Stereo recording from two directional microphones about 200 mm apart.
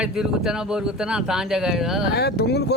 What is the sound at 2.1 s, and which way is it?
Speech, 55° left (ahead or behind).